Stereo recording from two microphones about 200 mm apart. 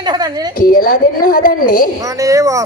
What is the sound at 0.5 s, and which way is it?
A woman's voice, 45° left (ahead or behind).